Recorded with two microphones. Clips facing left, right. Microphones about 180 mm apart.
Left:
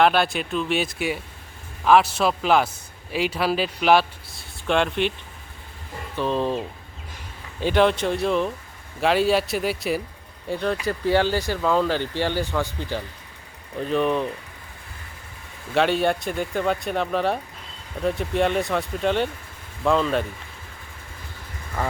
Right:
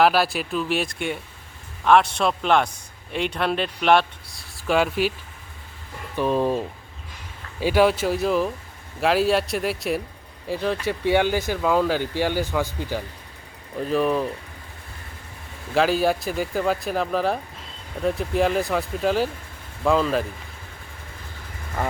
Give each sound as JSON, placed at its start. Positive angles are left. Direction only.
{"t": 0.0, "sound": "a man's voice", "side_deg": -5}
{"t": 6.1, "sound": "speech", "side_deg": -15}
{"t": 7.6, "sound": "speech", "side_deg": -5}
{"t": 11.2, "sound": "speech", "side_deg": -15}
{"t": 13.7, "sound": "speech", "side_deg": -5}
{"t": 15.7, "sound": "speech", "side_deg": 0}